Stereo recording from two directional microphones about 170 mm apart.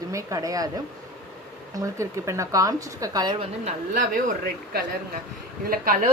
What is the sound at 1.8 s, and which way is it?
A woman's voice, 15° right (ahead or behind).